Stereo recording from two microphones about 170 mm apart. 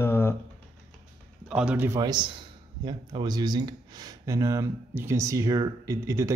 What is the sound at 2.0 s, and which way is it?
Speech, 25° right (ahead or behind).